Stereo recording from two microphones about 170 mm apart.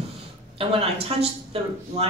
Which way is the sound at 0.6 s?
35° right (ahead or behind).